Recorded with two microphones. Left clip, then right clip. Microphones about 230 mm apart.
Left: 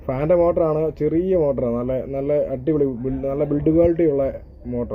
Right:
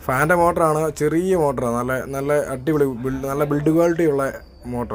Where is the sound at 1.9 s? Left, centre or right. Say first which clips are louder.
Even; right.